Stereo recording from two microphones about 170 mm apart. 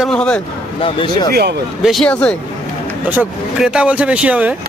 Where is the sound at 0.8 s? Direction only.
30° left (ahead or behind).